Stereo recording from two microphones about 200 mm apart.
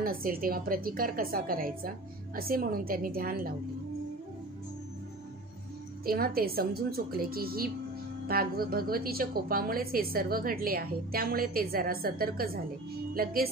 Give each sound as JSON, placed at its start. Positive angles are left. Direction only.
{"t": 0.0, "sound": "a woman's voice", "side_deg": -45}
{"t": 6.0, "sound": "a woman's voice", "side_deg": -50}